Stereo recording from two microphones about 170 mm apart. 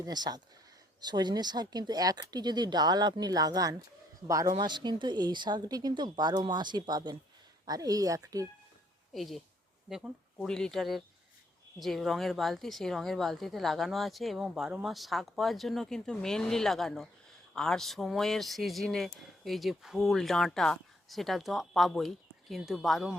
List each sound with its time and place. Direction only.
0.0 s speech: 25° right (ahead or behind)
9.1 s a woman's voice: centre (ahead or behind)